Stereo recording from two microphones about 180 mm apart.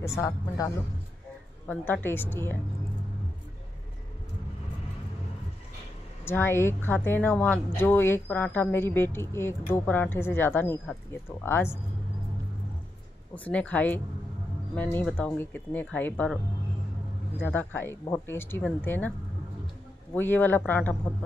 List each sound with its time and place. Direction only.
0.0 s speech: 15° left (ahead or behind)
6.2 s speech: 15° left (ahead or behind)
13.3 s speech: 10° left (ahead or behind)
17.4 s speech: 10° left (ahead or behind)
20.2 s speech: 10° left (ahead or behind)